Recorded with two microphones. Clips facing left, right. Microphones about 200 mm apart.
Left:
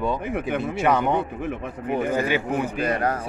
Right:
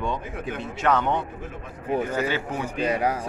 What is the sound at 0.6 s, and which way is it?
A man's voice, 10° left (ahead or behind).